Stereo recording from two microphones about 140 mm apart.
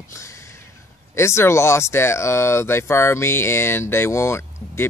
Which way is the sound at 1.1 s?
20° left (ahead or behind).